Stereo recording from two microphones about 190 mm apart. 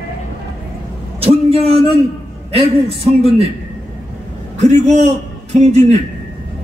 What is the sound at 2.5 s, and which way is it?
Speech, 30° right (ahead or behind).